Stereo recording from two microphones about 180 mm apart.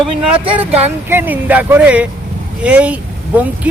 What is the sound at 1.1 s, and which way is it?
Speech, 10° right (ahead or behind).